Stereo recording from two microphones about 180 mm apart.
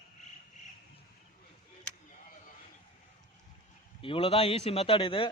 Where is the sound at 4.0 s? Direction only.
30° left (ahead or behind).